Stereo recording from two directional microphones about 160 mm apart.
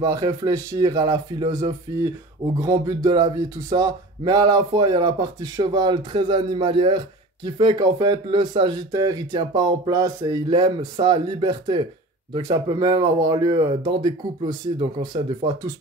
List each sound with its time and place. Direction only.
0.0 s speech: 20° right (ahead or behind)